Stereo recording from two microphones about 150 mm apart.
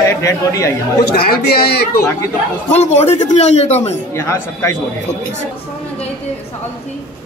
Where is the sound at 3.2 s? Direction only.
45° left (ahead or behind).